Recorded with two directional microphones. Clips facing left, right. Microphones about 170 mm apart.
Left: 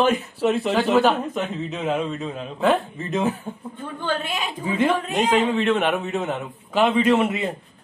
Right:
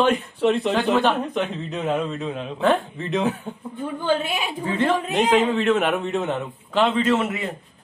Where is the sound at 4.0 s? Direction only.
10° right (ahead or behind).